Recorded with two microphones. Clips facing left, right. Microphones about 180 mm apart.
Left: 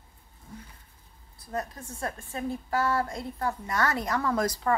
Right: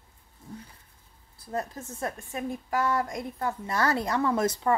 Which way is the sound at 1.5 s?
25° right (ahead or behind).